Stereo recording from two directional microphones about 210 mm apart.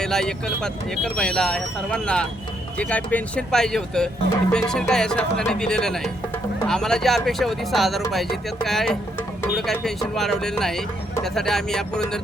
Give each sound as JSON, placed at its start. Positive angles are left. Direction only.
{"t": 0.0, "sound": "speech", "side_deg": 5}